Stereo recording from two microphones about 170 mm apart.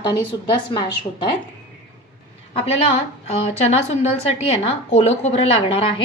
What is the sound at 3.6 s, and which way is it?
A woman's voice, 40° left (ahead or behind).